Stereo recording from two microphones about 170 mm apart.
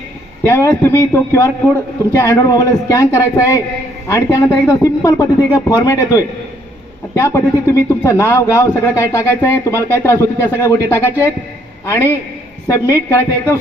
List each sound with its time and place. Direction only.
0.4 s a man's voice: 15° left (ahead or behind)
12.6 s a man's voice: 20° left (ahead or behind)